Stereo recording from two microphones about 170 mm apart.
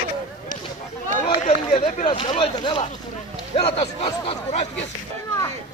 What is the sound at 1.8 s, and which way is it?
Speech, 45° left (ahead or behind).